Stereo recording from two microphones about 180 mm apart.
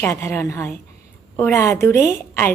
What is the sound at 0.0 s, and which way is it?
A woman's voice, 15° left (ahead or behind).